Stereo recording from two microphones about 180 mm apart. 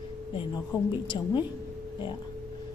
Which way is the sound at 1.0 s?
25° left (ahead or behind).